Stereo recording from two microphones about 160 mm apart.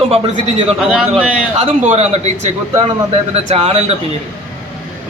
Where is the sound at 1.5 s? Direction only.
40° right (ahead or behind).